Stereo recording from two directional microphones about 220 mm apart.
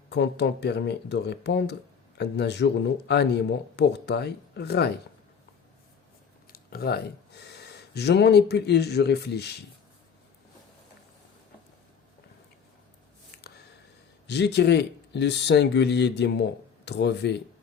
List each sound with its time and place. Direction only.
0.1 s speech: 50° left (ahead or behind)
6.5 s speech: 45° left (ahead or behind)
13.4 s a sound: 45° left (ahead or behind)
14.3 s speech: 50° left (ahead or behind)